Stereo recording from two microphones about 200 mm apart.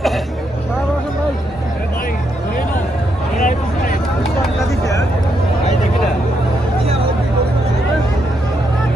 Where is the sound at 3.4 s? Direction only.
45° left (ahead or behind).